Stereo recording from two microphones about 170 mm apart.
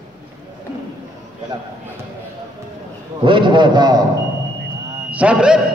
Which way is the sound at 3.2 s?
30° right (ahead or behind).